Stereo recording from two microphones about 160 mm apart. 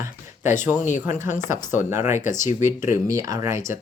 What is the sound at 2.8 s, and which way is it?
Speech, 20° right (ahead or behind).